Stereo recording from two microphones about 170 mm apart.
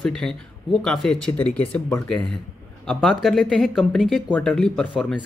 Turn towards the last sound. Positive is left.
turn(degrees=0)  # may be behind; listen again after turning